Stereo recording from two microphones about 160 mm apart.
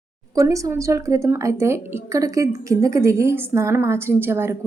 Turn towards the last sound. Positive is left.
turn(degrees=-15)  # may be behind; listen again after turning